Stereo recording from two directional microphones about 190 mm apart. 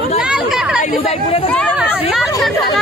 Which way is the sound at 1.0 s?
30° left (ahead or behind).